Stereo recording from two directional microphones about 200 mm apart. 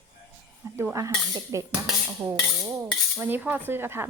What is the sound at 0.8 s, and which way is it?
Speech, 15° right (ahead or behind).